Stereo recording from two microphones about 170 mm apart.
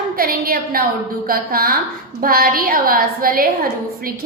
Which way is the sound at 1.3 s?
60° right (ahead or behind).